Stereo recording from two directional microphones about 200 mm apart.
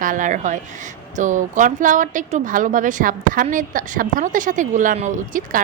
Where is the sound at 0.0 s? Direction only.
40° right (ahead or behind).